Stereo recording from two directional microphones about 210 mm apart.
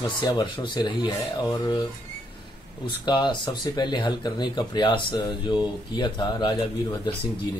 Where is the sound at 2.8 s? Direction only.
20° left (ahead or behind).